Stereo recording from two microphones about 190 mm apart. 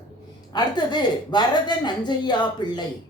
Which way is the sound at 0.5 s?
20° left (ahead or behind).